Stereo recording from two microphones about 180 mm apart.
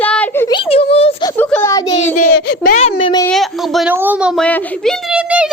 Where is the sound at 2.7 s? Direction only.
45° left (ahead or behind).